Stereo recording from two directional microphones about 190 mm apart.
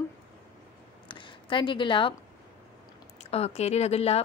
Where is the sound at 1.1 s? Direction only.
25° left (ahead or behind).